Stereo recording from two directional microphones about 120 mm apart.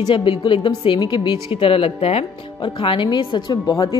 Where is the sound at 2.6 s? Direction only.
45° left (ahead or behind).